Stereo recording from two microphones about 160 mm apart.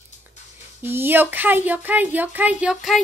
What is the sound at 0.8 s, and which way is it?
Speech, 15° right (ahead or behind).